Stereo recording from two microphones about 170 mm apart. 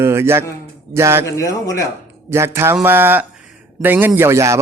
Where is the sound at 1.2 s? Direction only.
20° left (ahead or behind).